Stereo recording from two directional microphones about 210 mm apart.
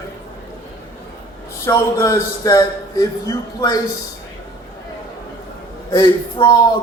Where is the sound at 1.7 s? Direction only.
15° left (ahead or behind).